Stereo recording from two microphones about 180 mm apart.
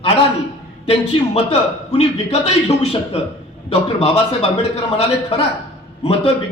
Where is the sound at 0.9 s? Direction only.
35° left (ahead or behind).